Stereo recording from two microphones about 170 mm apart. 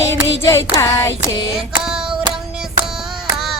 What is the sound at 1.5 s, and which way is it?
Hands, 5° right (ahead or behind).